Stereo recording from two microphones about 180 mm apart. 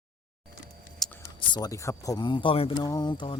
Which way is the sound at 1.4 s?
20° left (ahead or behind).